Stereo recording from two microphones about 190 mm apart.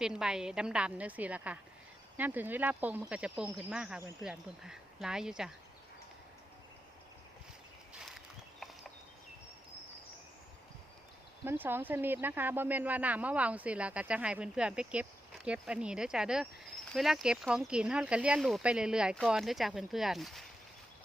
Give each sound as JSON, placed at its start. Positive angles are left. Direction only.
{"t": 0.0, "sound": "a woman's voice", "side_deg": -5}
{"t": 11.4, "sound": "a woman's voice", "side_deg": -10}